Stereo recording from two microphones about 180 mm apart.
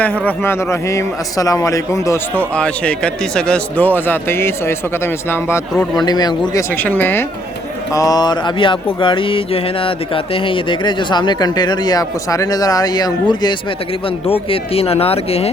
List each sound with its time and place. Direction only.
0.0 s a man's voice: 10° left (ahead or behind)
2.6 s a man's voice: 5° left (ahead or behind)
5.7 s speech: centre (ahead or behind)
6.1 s a man's voice: 20° left (ahead or behind)